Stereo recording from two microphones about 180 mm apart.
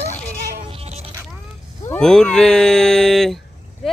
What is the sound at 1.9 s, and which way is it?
Speech, 5° left (ahead or behind).